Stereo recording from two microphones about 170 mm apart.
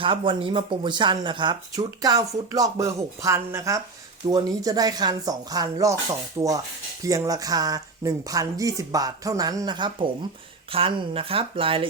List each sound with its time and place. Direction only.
0.0 s speech: 30° right (ahead or behind)